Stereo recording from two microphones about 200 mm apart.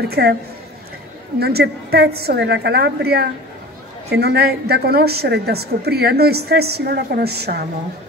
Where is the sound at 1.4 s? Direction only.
50° right (ahead or behind).